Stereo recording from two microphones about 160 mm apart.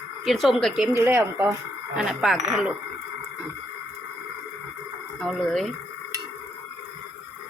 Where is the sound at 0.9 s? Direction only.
15° right (ahead or behind).